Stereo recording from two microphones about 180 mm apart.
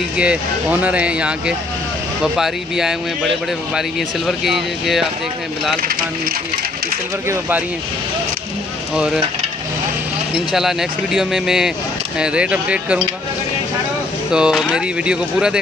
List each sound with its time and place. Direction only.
0.2 s speech: 5° right (ahead or behind)
5.8 s speech: 55° right (ahead or behind)
7.2 s speech: 10° right (ahead or behind)
8.9 s speech: 5° right (ahead or behind)
10.3 s speech: centre (ahead or behind)
14.3 s speech: 5° right (ahead or behind)